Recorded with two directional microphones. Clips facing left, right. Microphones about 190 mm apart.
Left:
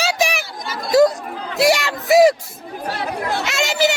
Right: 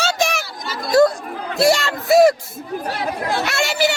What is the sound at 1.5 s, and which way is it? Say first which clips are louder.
Music: even; 15° left (ahead or behind).